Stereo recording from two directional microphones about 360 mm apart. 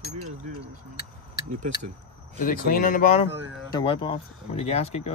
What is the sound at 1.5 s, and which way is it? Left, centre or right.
Speech, centre.